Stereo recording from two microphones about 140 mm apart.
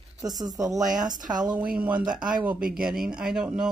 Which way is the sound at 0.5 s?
5° right (ahead or behind).